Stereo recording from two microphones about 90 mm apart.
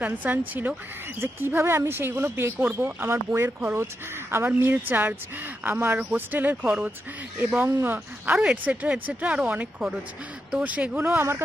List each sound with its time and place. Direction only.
0.0 s speech: 20° right (ahead or behind)